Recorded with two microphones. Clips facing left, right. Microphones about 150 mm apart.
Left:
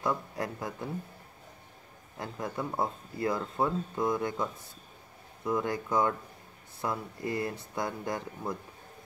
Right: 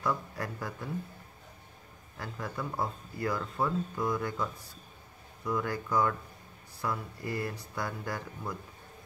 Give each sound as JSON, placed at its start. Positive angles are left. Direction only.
{"t": 0.0, "sound": "speech", "side_deg": 20}
{"t": 2.1, "sound": "speech", "side_deg": 20}